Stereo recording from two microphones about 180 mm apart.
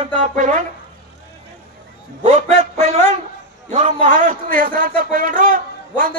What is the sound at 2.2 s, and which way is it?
A man's voice, 40° right (ahead or behind).